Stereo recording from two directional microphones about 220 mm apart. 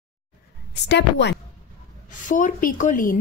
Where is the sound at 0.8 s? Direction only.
50° left (ahead or behind).